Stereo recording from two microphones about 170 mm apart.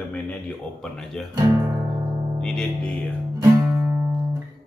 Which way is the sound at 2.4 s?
5° left (ahead or behind).